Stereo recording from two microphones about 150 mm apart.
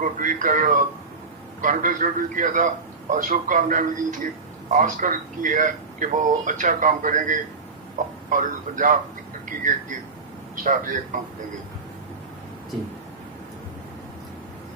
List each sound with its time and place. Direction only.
0.0 s a man's voice: 60° right (ahead or behind)
10.5 s a man's voice: 60° right (ahead or behind)